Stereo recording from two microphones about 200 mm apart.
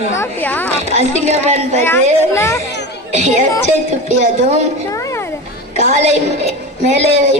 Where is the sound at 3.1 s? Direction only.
35° right (ahead or behind).